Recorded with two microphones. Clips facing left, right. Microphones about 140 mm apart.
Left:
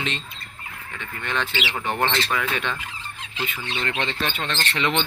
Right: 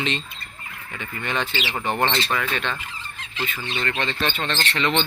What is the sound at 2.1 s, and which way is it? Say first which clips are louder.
Speech: right 1 dB; 15° right (ahead or behind).